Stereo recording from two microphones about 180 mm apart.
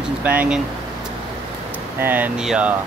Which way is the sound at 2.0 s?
10° right (ahead or behind).